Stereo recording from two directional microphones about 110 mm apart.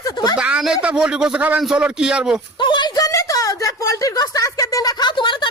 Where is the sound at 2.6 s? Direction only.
45° left (ahead or behind).